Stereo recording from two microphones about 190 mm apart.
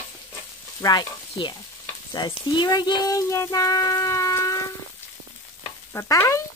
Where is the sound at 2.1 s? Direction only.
20° left (ahead or behind).